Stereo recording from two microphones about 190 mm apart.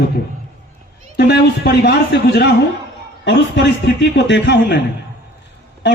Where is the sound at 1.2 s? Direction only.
60° left (ahead or behind).